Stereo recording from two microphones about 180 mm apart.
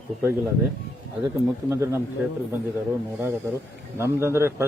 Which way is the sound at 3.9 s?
15° right (ahead or behind).